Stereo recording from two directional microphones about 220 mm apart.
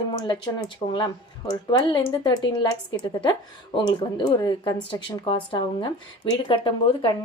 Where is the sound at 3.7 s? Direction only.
20° left (ahead or behind).